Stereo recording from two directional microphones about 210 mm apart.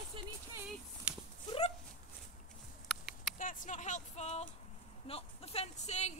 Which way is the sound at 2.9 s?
Centre (ahead or behind).